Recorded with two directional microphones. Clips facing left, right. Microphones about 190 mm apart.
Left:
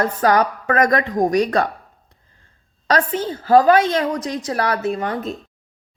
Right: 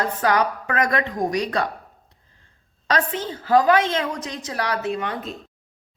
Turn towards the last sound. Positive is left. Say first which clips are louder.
# left 4 dB
turn(degrees=40)  # may be behind; listen again after turning